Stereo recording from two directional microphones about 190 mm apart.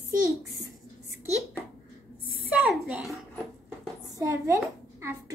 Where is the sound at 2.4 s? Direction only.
5° right (ahead or behind).